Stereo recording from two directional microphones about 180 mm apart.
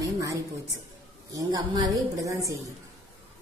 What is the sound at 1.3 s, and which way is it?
Speech, 20° right (ahead or behind).